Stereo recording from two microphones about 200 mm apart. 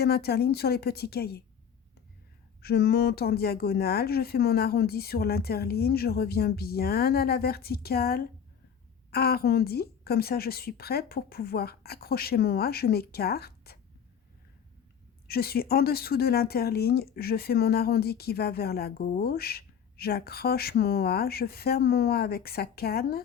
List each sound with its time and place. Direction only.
0.0 s speech: 50° left (ahead or behind)
2.6 s speech: 50° left (ahead or behind)
15.3 s speech: 50° left (ahead or behind)